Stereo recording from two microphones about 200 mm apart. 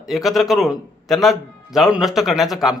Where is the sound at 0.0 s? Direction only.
Centre (ahead or behind).